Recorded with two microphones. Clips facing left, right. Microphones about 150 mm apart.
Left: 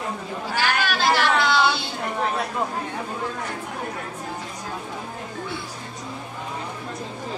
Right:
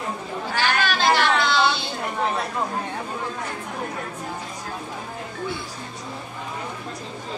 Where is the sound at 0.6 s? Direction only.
10° left (ahead or behind).